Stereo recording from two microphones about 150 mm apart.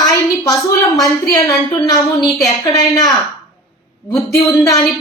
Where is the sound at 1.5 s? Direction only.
25° left (ahead or behind).